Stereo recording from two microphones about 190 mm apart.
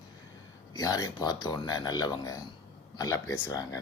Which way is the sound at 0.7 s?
20° left (ahead or behind).